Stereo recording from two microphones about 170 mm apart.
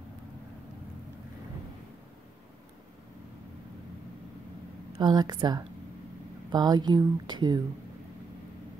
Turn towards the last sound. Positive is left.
turn(degrees=-25)  # may be behind; listen again after turning